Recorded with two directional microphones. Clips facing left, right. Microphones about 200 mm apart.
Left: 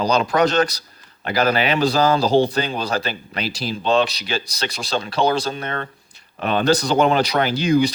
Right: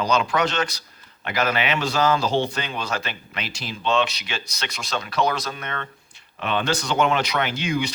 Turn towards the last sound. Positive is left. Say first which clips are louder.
# left 7 dB
turn(degrees=35)  # may be behind; listen again after turning